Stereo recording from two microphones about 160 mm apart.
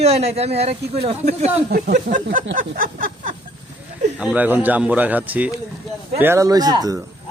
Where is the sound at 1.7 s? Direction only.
75° right (ahead or behind).